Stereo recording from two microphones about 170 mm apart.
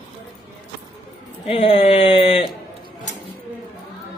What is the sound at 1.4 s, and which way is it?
A man's voice, 35° left (ahead or behind).